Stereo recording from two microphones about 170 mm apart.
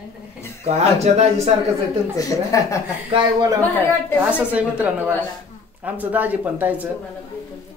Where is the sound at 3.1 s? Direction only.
25° right (ahead or behind).